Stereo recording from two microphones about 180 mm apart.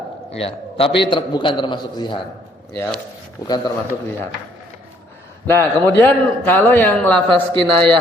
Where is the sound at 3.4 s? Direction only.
20° left (ahead or behind).